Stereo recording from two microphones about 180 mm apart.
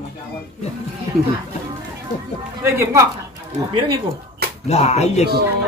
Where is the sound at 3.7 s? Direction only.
30° right (ahead or behind).